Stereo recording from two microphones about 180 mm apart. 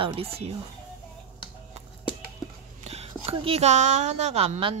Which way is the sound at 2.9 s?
35° right (ahead or behind).